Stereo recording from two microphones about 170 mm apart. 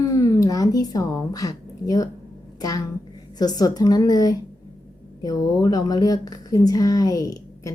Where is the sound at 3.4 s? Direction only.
25° left (ahead or behind).